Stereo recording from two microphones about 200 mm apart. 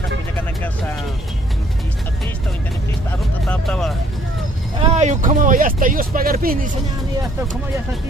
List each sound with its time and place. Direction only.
3.4 s vehicle: 5° left (ahead or behind)
4.7 s speech: 35° right (ahead or behind)